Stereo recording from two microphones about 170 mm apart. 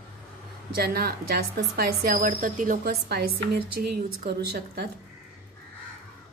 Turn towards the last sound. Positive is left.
turn(degrees=-75)  # may be behind; listen again after turning